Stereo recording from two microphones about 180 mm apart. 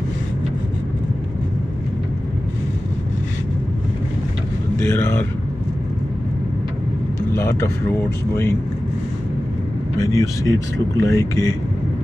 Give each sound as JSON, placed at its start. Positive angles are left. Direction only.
{"t": 4.8, "sound": "speech", "side_deg": 15}
{"t": 7.3, "sound": "a sound", "side_deg": 15}
{"t": 9.9, "sound": "speech", "side_deg": 20}